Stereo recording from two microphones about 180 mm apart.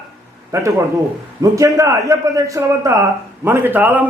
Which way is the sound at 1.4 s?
20° right (ahead or behind).